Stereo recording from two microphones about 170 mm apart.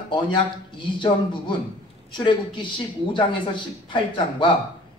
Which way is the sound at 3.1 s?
30° left (ahead or behind).